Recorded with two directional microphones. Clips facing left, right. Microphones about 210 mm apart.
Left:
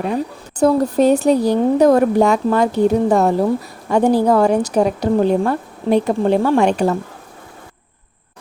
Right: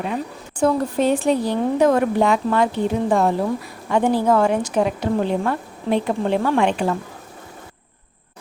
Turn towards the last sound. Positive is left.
turn(degrees=40)  # may be behind; listen again after turning